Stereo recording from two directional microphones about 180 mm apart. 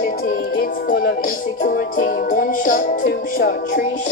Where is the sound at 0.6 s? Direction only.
55° left (ahead or behind).